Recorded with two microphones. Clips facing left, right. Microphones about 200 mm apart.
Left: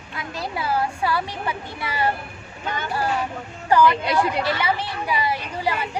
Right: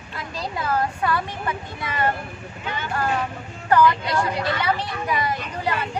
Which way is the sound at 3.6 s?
10° left (ahead or behind).